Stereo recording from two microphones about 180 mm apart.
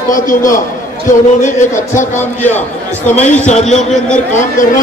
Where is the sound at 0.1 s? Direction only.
50° left (ahead or behind).